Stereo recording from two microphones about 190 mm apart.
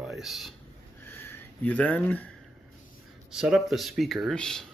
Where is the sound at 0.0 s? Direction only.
Centre (ahead or behind).